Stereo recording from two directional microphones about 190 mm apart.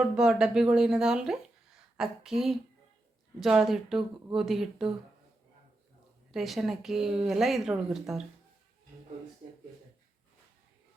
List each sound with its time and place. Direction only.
0.0 s a woman's voice: 5° right (ahead or behind)
6.3 s a woman's voice: centre (ahead or behind)